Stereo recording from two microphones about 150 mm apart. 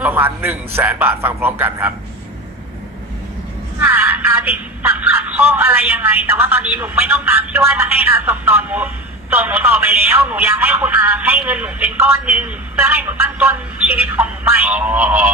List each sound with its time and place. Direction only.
0.0 s speech: 15° right (ahead or behind)
3.8 s speech: 15° right (ahead or behind)